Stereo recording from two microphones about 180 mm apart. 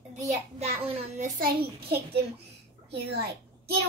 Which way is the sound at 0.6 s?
35° right (ahead or behind).